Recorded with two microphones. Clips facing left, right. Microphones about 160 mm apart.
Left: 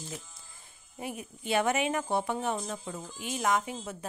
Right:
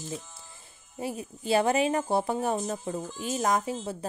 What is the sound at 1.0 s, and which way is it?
Speech, 35° right (ahead or behind).